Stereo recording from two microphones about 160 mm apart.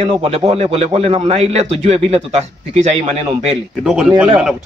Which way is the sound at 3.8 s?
5° right (ahead or behind).